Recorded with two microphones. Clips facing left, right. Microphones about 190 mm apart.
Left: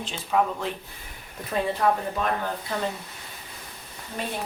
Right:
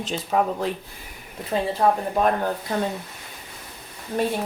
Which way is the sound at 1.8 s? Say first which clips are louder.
Right 3 dB; 30° right (ahead or behind).